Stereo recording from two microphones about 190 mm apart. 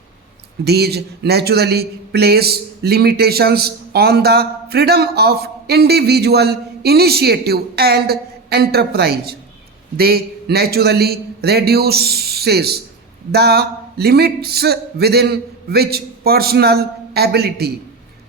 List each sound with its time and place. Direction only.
0.6 s a man's voice: 60° right (ahead or behind)